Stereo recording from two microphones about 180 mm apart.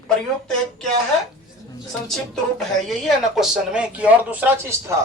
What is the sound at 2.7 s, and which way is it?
Speech, centre (ahead or behind).